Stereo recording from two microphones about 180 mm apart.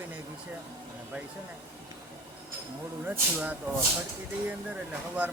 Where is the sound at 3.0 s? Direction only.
10° right (ahead or behind).